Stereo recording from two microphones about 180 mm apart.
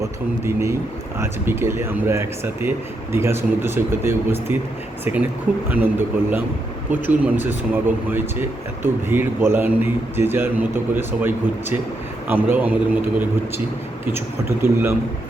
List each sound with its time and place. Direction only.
0.0 s speech: 15° right (ahead or behind)
5.7 s speech: 10° right (ahead or behind)